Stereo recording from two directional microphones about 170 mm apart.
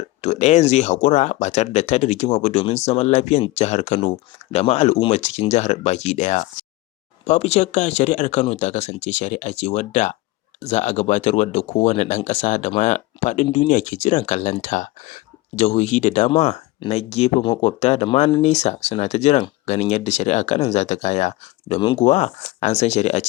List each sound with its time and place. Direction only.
0.2 s speech: 40° left (ahead or behind)